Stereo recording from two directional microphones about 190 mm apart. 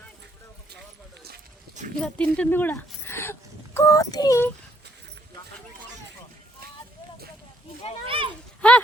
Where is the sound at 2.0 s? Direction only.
5° left (ahead or behind).